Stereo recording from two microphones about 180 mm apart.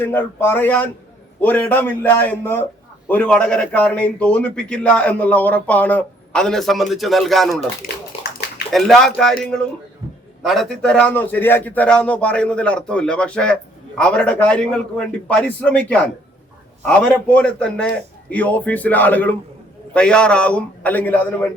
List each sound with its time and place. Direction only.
0.0 s a man's voice: 10° left (ahead or behind)
7.8 s speech: 50° left (ahead or behind)
8.7 s a man's voice: centre (ahead or behind)